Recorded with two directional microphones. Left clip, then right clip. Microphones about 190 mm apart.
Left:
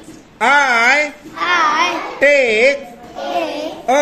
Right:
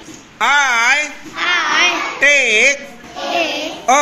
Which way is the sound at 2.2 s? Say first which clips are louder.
Even; 10° right (ahead or behind).